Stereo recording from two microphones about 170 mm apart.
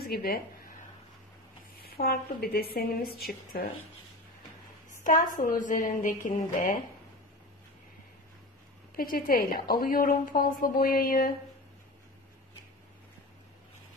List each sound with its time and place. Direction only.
0.0 s speech: 65° left (ahead or behind)
1.8 s a woman's voice: 65° left (ahead or behind)
5.0 s a woman's voice: 50° left (ahead or behind)
8.9 s a woman's voice: 55° left (ahead or behind)